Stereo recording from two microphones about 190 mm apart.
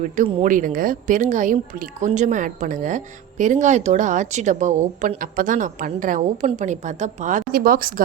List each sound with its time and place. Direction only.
0.0 s speech: 40° right (ahead or behind)